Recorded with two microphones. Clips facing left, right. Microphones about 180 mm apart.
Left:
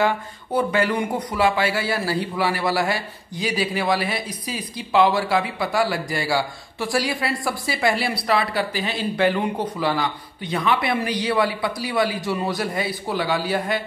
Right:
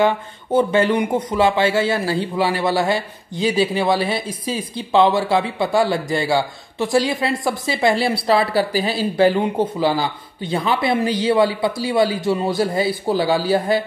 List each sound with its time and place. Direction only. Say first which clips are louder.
0.0 s speech: right 4 dB; 25° right (ahead or behind)